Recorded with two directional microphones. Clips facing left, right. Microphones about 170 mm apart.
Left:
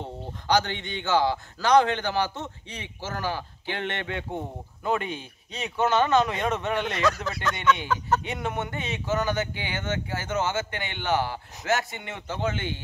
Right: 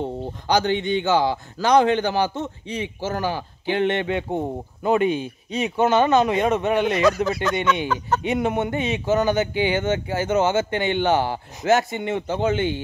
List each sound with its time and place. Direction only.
0.5 s speech: 15° right (ahead or behind)